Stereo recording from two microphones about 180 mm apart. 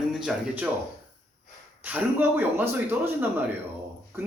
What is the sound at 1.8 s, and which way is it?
A man's voice, 10° right (ahead or behind).